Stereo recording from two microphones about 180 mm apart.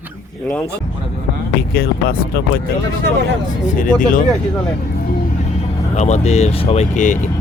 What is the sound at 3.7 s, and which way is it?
Speech, 50° left (ahead or behind).